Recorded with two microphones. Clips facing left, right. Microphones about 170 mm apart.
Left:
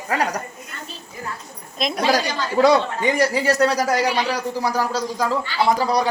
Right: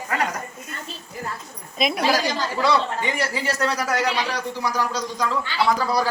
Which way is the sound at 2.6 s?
45° left (ahead or behind).